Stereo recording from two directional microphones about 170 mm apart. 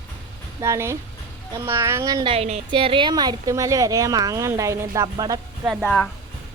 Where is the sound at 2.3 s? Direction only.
40° right (ahead or behind); by 5.4 s 20° right (ahead or behind).